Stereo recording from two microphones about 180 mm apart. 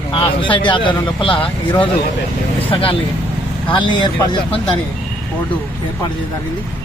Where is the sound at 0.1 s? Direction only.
25° left (ahead or behind).